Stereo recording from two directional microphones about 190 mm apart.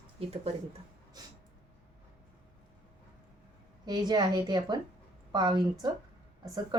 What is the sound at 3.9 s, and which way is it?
A woman's voice, 20° right (ahead or behind).